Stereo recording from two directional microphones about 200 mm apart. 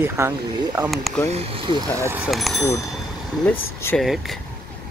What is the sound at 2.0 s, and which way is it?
Speech, 10° right (ahead or behind).